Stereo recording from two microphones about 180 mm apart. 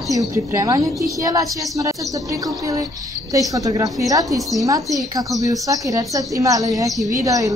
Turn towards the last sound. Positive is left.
turn(degrees=-20)  # may be behind; listen again after turning